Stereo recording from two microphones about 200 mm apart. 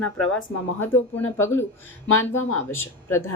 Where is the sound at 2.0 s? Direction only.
90° left.